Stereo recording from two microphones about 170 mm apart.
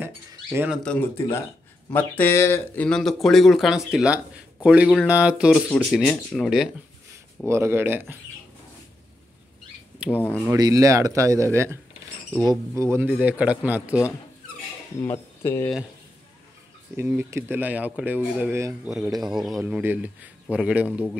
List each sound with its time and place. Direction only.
0.3 s a sound: 15° right (ahead or behind)
0.8 s cutlery: 10° left (ahead or behind)
2.0 s speech: 10° left (ahead or behind)
7.4 s speech: 15° right (ahead or behind)
10.1 s cutlery: 10° left (ahead or behind)
10.4 s speech: 20° right (ahead or behind)
15.0 s cutlery: 15° left (ahead or behind)
16.9 s speech: 15° right (ahead or behind)
19.3 s speech: centre (ahead or behind)
19.6 s speech: 10° right (ahead or behind)